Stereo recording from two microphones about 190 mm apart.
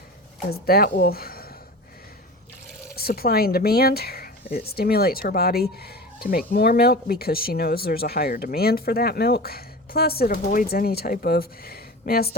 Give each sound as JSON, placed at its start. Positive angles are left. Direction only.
{"t": 0.5, "sound": "speech", "side_deg": 55}
{"t": 3.0, "sound": "speech", "side_deg": 55}